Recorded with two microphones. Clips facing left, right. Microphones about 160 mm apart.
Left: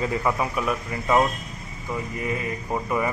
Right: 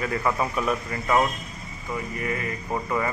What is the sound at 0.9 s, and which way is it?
Speech, 15° left (ahead or behind).